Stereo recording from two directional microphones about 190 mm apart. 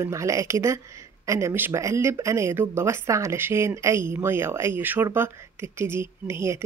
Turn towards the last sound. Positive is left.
turn(degrees=-15)  # may be behind; listen again after turning